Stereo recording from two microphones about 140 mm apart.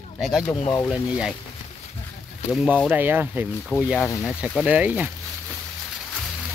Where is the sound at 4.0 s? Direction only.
20° left (ahead or behind).